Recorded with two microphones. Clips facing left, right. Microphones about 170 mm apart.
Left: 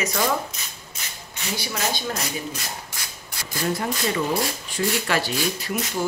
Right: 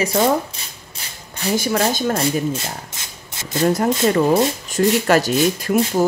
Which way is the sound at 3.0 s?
25° right (ahead or behind).